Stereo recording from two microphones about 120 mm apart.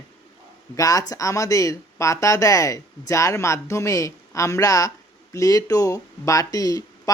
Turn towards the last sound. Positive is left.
turn(degrees=30)  # may be behind; listen again after turning